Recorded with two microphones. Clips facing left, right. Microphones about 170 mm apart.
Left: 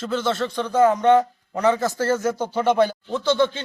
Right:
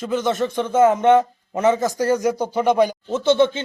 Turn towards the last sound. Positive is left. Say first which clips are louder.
# right 4 dB
turn(degrees=-25)  # may be behind; listen again after turning